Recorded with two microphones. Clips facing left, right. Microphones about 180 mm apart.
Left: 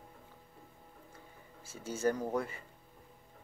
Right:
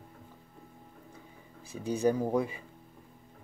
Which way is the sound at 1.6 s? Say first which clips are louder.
Right 5 dB; 15° right (ahead or behind).